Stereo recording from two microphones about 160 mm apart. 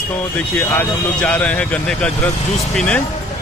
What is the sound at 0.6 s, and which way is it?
Speech, 10° left (ahead or behind).